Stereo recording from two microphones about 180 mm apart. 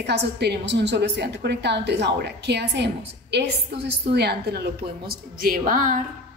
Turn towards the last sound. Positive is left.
turn(degrees=-45)  # may be behind; listen again after turning